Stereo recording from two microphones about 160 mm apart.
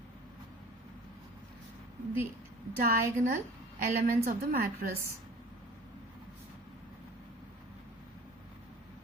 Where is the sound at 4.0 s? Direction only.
65° right (ahead or behind).